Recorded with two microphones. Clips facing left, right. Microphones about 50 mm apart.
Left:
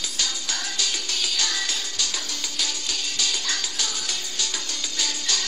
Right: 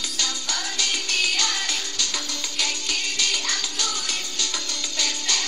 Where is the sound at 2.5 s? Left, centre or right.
Right.